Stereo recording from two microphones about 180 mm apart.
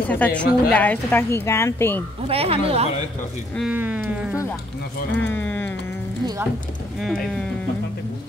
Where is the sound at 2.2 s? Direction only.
35° right (ahead or behind).